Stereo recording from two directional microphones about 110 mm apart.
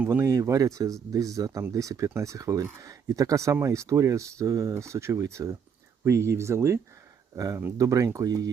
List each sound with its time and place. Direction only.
0.0 s speech: 20° right (ahead or behind)